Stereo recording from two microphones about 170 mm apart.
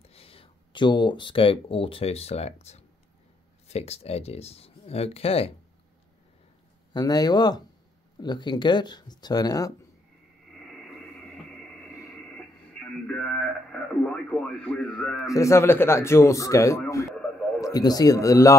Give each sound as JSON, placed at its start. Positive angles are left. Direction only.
{"t": 0.1, "sound": "speech", "side_deg": 35}
{"t": 6.9, "sound": "speech", "side_deg": 20}
{"t": 12.7, "sound": "radio", "side_deg": 5}
{"t": 14.7, "sound": "a man's voice", "side_deg": 5}
{"t": 15.2, "sound": "speech", "side_deg": 20}